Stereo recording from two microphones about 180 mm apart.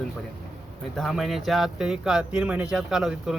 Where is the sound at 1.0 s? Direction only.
Centre (ahead or behind).